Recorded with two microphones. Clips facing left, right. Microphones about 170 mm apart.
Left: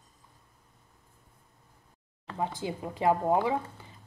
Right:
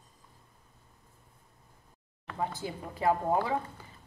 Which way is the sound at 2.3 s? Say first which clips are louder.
Left 2 dB; 20° left (ahead or behind).